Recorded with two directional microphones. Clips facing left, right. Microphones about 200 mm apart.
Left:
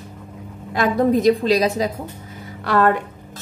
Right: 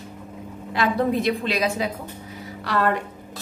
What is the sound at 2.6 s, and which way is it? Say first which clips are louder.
Speech: left 6 dB; 50° left (ahead or behind).